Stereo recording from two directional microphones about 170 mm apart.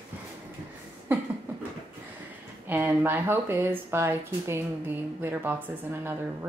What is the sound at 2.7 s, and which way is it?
Speech, 10° right (ahead or behind).